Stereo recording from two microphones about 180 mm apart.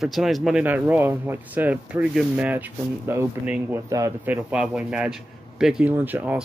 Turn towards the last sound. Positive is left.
turn(degrees=-10)  # may be behind; listen again after turning